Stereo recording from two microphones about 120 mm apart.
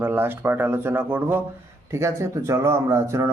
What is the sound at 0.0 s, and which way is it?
Speech, 20° right (ahead or behind).